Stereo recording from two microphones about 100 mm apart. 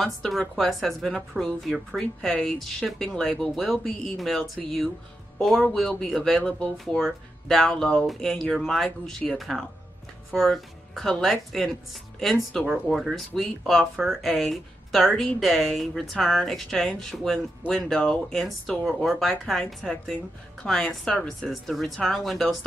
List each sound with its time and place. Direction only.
0.0 s speech: centre (ahead or behind)
18.4 s speech: 5° right (ahead or behind)